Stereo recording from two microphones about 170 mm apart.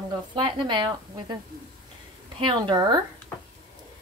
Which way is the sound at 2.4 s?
30° right (ahead or behind).